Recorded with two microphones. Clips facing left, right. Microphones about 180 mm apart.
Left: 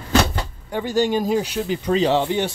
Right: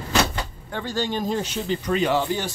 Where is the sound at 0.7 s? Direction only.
15° left (ahead or behind).